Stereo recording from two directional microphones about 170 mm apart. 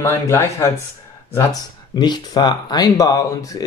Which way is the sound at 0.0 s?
15° left (ahead or behind).